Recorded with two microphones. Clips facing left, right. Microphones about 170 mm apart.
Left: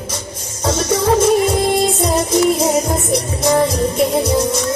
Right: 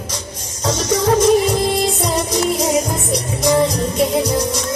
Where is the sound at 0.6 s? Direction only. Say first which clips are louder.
Left 1 dB; 30° left (ahead or behind).